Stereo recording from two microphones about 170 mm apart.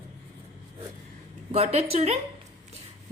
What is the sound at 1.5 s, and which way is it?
Speech, 40° right (ahead or behind).